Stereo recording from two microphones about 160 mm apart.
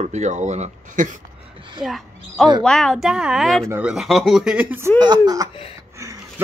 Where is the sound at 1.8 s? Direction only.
Centre (ahead or behind).